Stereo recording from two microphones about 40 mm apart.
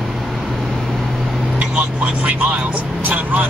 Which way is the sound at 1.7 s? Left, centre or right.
Right.